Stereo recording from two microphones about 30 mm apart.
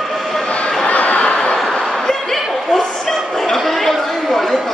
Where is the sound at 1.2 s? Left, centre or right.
Left.